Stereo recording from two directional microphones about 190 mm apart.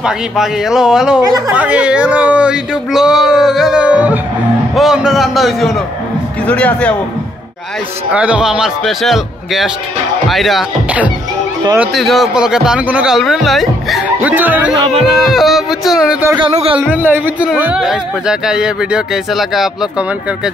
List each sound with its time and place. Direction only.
0.0 s speech: 5° right (ahead or behind)
8.1 s speech: 5° right (ahead or behind)
11.9 s speech: centre (ahead or behind)
16.3 s speech: 30° right (ahead or behind)
16.9 s speech: 10° right (ahead or behind)